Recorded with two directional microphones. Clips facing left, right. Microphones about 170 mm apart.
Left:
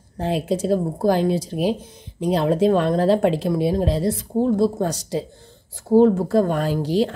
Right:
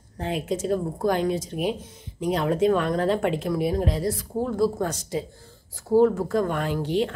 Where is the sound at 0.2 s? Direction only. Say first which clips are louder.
Left 5 dB; 35° left (ahead or behind).